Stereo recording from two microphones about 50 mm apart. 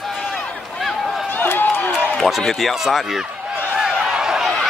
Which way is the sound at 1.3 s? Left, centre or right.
Left.